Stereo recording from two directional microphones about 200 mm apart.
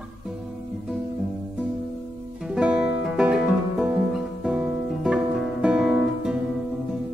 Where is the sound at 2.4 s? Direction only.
5° right (ahead or behind).